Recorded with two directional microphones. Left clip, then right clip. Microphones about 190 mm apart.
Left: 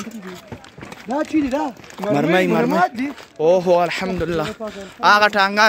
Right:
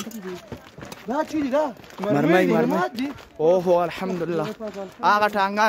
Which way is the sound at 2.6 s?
15° left (ahead or behind).